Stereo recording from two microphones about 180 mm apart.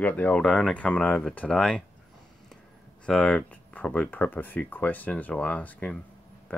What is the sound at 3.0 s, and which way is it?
Speech, 5° left (ahead or behind).